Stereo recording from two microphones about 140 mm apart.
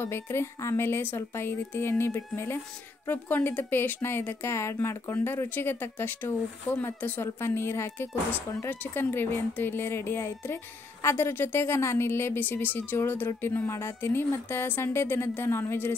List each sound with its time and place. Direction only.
0.0 s a woman's voice: 20° left (ahead or behind)